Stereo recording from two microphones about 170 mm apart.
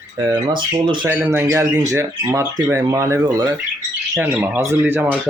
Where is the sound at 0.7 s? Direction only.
30° right (ahead or behind).